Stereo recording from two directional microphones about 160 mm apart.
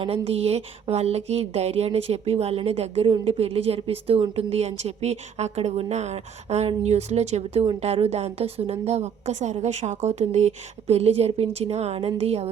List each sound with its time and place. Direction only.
0.0 s speech: 40° right (ahead or behind)